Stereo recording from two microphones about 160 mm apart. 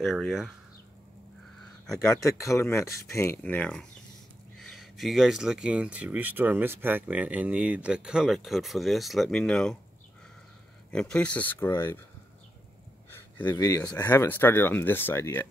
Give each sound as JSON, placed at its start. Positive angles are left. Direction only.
{"t": 0.0, "sound": "speech", "side_deg": 0}
{"t": 2.2, "sound": "speech", "side_deg": 20}
{"t": 10.9, "sound": "speech", "side_deg": 5}
{"t": 13.1, "sound": "speech", "side_deg": 15}